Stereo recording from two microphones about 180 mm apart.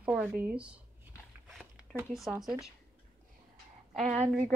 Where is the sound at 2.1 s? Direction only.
Centre (ahead or behind).